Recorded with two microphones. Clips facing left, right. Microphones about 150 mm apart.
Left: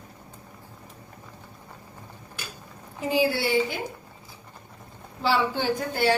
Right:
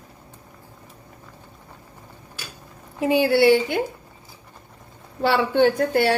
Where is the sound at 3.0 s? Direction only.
65° right (ahead or behind).